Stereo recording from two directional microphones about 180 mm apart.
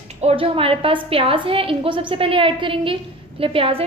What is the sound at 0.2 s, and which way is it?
A woman's voice, 35° right (ahead or behind).